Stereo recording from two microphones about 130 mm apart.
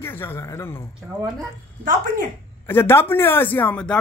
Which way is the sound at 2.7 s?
20° left (ahead or behind).